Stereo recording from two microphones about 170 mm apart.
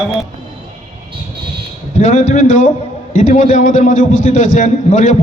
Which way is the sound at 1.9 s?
45° left (ahead or behind).